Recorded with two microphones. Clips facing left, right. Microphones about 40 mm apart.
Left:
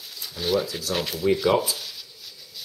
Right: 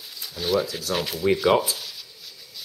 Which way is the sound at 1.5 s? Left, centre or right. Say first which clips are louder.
Right 1 dB; centre.